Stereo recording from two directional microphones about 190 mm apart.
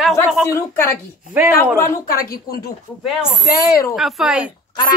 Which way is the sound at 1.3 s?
10° right (ahead or behind).